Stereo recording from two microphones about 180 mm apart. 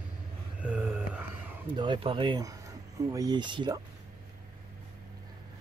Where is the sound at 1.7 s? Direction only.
25° right (ahead or behind).